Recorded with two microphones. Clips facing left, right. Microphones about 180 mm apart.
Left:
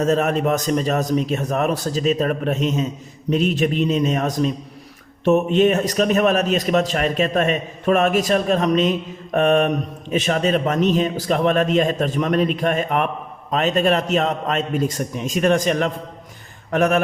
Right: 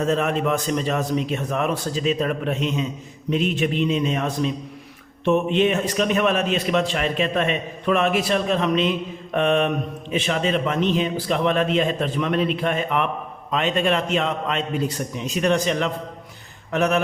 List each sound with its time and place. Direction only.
0.0 s a man's voice: 40° left (ahead or behind)